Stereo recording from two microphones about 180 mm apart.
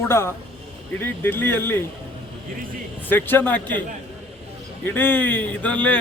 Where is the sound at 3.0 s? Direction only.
10° left (ahead or behind).